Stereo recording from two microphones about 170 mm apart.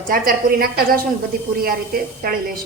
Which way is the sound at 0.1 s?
55° right (ahead or behind).